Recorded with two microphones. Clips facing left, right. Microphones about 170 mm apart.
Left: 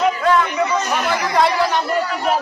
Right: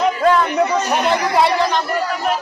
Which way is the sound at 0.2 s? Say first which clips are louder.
Right 2 dB; 45° right (ahead or behind).